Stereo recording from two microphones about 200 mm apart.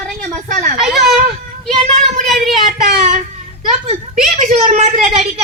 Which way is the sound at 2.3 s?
Centre (ahead or behind).